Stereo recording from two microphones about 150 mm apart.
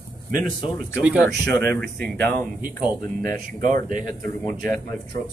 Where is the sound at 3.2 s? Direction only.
60° right (ahead or behind).